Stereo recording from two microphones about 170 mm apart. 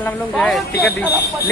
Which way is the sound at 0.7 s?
70° left (ahead or behind).